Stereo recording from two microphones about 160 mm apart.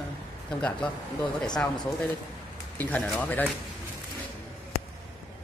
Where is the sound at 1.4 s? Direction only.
5° left (ahead or behind).